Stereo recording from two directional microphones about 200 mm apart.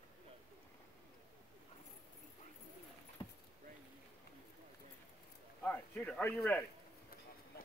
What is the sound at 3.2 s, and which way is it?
Keys jangling, 25° left (ahead or behind).